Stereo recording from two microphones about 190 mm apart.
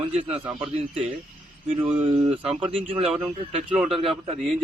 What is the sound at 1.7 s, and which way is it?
Speech, 30° right (ahead or behind).